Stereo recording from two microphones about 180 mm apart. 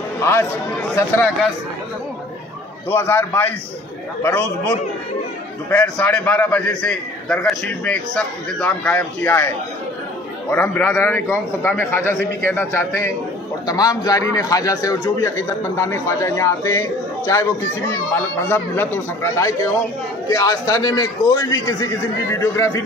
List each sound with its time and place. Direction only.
0.2 s a man's voice: 15° left (ahead or behind)
2.9 s a man's voice: 15° left (ahead or behind)
10.5 s a man's voice: 10° left (ahead or behind)
18.1 s a man's voice: 10° left (ahead or behind)